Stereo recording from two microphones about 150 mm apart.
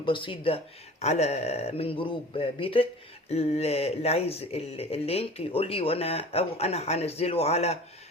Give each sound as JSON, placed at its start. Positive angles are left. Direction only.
{"t": 0.0, "sound": "speech", "side_deg": 35}
{"t": 1.0, "sound": "speech", "side_deg": 45}